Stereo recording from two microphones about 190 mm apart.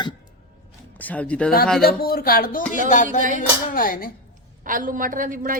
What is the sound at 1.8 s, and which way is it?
Speech, 55° left (ahead or behind).